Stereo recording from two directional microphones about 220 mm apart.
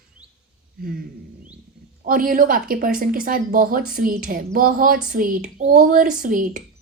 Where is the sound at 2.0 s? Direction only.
40° right (ahead or behind).